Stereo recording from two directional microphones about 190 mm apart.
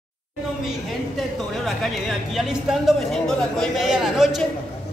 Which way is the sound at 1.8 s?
Centre (ahead or behind).